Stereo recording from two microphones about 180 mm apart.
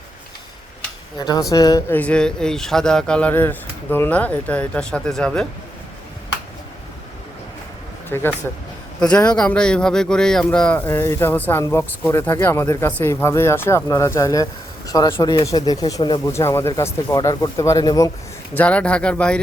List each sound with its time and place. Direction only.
1.2 s speech: 20° left (ahead or behind)
1.9 s speech: 10° left (ahead or behind)
8.1 s speech: 10° left (ahead or behind)
18.5 s speech: 5° left (ahead or behind)